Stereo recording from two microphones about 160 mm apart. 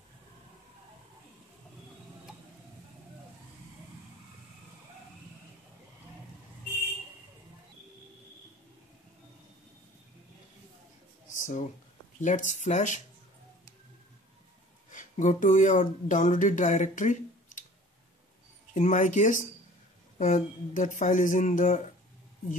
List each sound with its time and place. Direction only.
11.2 s a sound: 55° left (ahead or behind)
12.2 s speech: 50° left (ahead or behind)
14.9 s speech: 50° left (ahead or behind)
18.8 s speech: 50° left (ahead or behind)